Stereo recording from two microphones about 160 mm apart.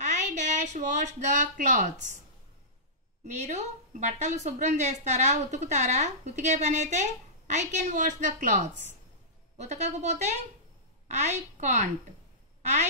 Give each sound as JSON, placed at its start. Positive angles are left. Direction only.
{"t": 0.0, "sound": "speech", "side_deg": -50}
{"t": 3.3, "sound": "a woman's voice", "side_deg": -45}